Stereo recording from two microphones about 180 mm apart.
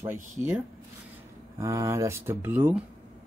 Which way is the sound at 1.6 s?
15° right (ahead or behind).